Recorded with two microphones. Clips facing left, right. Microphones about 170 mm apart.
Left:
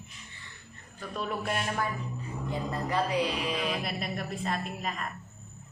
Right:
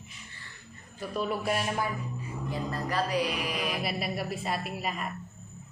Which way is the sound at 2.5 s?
20° left (ahead or behind).